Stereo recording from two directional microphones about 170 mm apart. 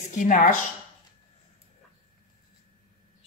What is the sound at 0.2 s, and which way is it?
Speech, 50° left (ahead or behind).